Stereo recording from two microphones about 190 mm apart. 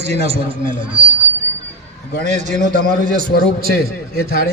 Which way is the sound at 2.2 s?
40° right (ahead or behind).